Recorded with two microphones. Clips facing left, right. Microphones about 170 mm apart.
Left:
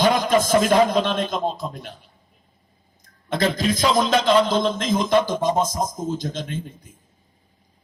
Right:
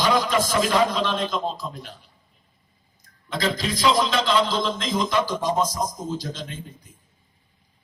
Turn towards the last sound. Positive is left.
turn(degrees=50)  # may be behind; listen again after turning